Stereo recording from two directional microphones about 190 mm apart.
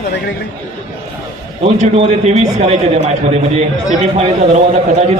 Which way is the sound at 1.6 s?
35° right (ahead or behind).